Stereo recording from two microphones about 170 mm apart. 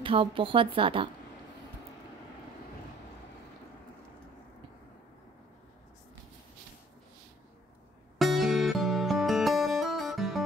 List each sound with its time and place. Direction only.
0.0 s a woman's voice: 30° right (ahead or behind)
8.2 s music: centre (ahead or behind)